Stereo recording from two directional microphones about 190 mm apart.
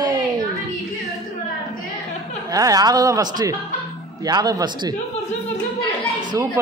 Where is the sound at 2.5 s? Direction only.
20° right (ahead or behind).